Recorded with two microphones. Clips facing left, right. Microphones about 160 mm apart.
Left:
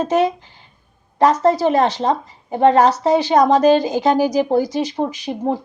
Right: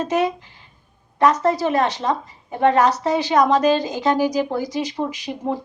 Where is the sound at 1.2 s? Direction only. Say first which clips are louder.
Left 3 dB; 30° left (ahead or behind).